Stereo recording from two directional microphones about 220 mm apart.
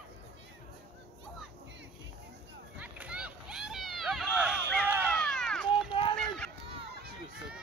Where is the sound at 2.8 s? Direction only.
5° right (ahead or behind).